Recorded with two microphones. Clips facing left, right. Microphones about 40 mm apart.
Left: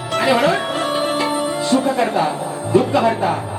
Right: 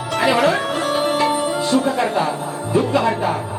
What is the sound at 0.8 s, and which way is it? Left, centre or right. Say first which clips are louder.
Music: even; centre.